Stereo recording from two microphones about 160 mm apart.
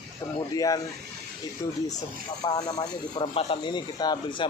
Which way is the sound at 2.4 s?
25° left (ahead or behind).